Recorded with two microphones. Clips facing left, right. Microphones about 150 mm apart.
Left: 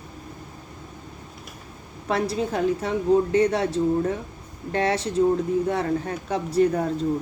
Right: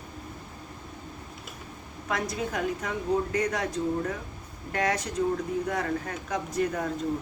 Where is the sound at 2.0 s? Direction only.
30° left (ahead or behind).